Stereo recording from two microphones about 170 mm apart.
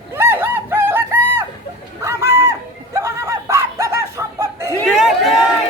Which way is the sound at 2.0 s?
15° right (ahead or behind).